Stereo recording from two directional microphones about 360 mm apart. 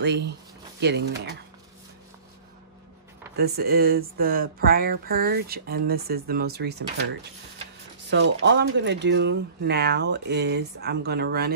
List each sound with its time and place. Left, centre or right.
0.0 s speech: right
3.3 s speech: right
8.4 s speech: right